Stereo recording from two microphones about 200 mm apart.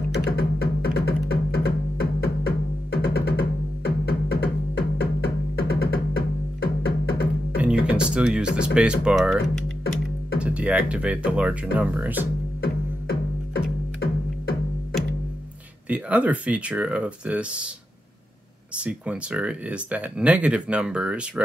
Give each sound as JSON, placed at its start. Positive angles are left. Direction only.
{"t": 0.1, "sound": "music", "side_deg": 50}
{"t": 7.5, "sound": "music", "side_deg": -5}
{"t": 8.7, "sound": "speech", "side_deg": -5}
{"t": 12.6, "sound": "music", "side_deg": 55}
{"t": 15.9, "sound": "speech", "side_deg": -5}
{"t": 18.8, "sound": "speech", "side_deg": -5}